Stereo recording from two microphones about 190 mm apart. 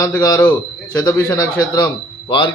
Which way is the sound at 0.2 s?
20° left (ahead or behind).